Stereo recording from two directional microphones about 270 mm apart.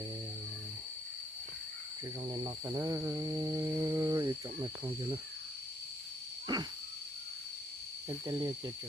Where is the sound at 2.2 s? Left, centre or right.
Centre.